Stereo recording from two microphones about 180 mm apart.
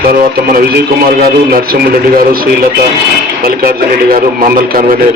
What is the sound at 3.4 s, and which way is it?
Speech, 55° right (ahead or behind).